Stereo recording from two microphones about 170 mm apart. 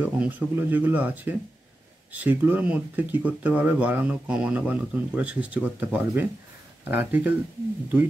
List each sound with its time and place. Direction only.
0.0 s speech: 10° right (ahead or behind)